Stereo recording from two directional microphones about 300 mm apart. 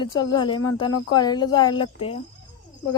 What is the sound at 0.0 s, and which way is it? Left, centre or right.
Speech, centre.